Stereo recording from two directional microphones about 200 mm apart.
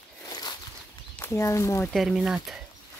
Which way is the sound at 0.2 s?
20° left (ahead or behind).